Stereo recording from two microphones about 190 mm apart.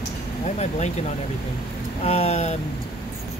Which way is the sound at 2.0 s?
35° left (ahead or behind).